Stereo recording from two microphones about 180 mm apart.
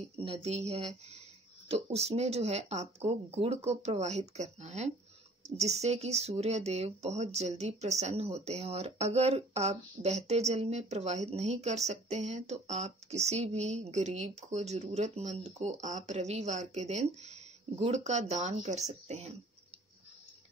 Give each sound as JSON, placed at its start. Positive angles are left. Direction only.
{"t": 0.2, "sound": "speech", "side_deg": -35}